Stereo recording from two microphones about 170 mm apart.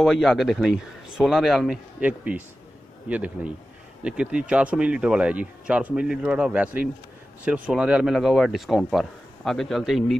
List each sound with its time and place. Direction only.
0.0 s speech: centre (ahead or behind)